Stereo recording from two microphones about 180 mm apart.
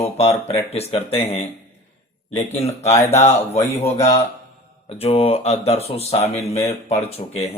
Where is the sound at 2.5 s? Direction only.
35° left (ahead or behind).